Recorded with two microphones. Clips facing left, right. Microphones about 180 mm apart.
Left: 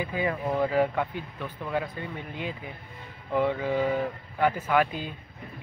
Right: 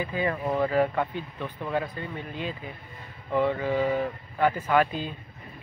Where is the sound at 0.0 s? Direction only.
10° left (ahead or behind).